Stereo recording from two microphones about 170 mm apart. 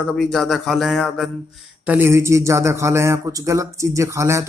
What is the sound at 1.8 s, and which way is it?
A man's voice, 10° right (ahead or behind).